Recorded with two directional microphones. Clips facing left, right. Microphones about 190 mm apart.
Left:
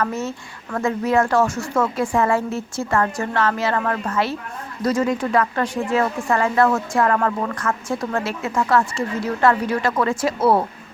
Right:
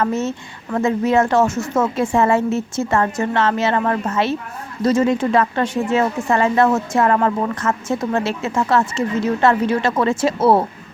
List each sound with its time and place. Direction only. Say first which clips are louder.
0.0 s speech: right 4 dB; 25° right (ahead or behind)